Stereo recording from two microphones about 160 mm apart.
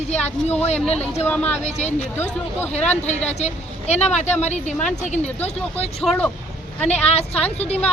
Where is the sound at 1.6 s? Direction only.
45° left (ahead or behind).